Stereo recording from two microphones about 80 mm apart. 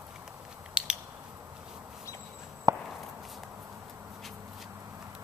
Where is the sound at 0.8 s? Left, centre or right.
Centre.